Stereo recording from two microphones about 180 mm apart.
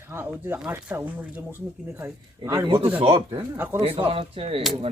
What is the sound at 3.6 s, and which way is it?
Speech, 10° right (ahead or behind).